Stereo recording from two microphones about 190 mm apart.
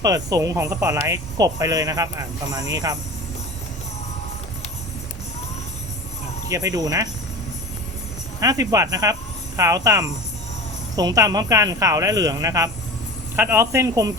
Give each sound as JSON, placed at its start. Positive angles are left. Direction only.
{"t": 0.0, "sound": "speech", "side_deg": -20}
{"t": 6.5, "sound": "speech", "side_deg": -20}
{"t": 8.4, "sound": "speech", "side_deg": -20}